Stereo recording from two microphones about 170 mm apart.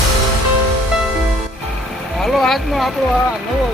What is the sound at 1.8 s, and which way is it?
Speech, centre (ahead or behind).